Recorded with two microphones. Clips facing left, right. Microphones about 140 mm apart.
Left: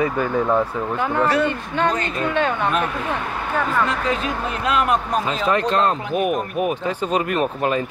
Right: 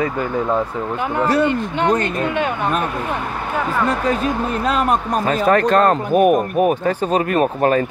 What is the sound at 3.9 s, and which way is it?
Speech, 40° right (ahead or behind).